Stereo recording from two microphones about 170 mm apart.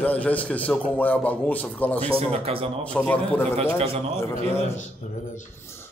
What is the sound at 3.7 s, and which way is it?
Speech, 35° right (ahead or behind).